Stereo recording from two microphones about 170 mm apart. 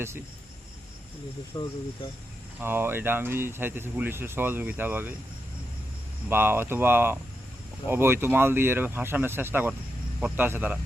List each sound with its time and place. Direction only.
1.5 s speech: 25° left (ahead or behind)
2.6 s speech: 15° right (ahead or behind)
6.2 s speech: 15° right (ahead or behind)